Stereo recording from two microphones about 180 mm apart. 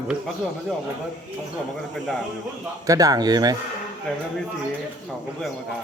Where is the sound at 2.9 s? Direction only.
20° right (ahead or behind).